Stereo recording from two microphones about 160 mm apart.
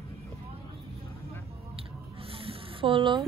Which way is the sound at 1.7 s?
35° right (ahead or behind).